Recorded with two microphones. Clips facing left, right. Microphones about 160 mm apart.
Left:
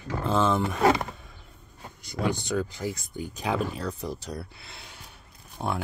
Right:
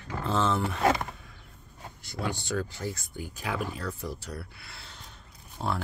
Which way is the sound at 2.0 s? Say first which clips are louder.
Left 5 dB; 15° left (ahead or behind).